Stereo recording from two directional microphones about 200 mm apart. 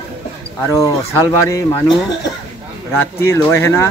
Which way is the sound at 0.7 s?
15° left (ahead or behind).